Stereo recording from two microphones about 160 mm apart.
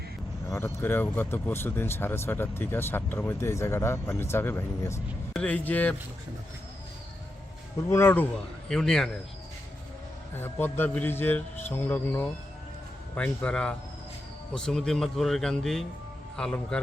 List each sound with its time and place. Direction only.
0.5 s speech: 15° left (ahead or behind)
7.8 s speech: 15° left (ahead or behind)
8.7 s speech: 5° left (ahead or behind)
10.3 s speech: 15° left (ahead or behind)